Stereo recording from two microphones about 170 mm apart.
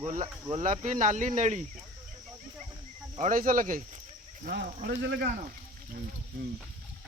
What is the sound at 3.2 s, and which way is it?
Speech, 55° right (ahead or behind).